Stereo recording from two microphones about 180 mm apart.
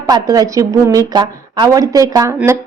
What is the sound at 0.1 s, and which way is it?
A woman's voice, 20° right (ahead or behind).